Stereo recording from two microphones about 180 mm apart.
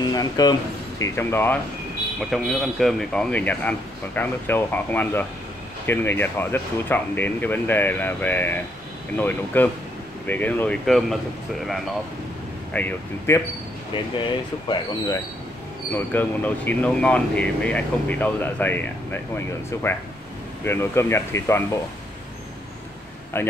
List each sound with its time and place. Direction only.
0.0 s speech: 20° left (ahead or behind)
2.1 s a man's voice: centre (ahead or behind)
12.7 s a man's voice: 10° left (ahead or behind)
13.9 s speech: 25° left (ahead or behind)
15.9 s a man's voice: 10° left (ahead or behind)
23.3 s a man's voice: 10° left (ahead or behind)